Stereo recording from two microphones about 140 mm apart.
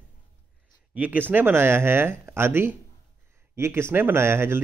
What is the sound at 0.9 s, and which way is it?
Speech, 10° right (ahead or behind).